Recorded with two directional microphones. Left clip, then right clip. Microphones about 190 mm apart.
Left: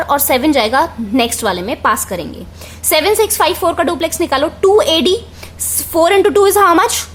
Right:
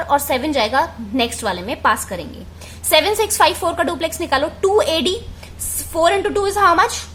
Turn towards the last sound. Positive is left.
turn(degrees=25)  # may be behind; listen again after turning